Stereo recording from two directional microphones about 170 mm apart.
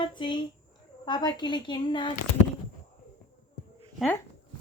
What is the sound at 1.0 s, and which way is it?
Speech, 25° left (ahead or behind).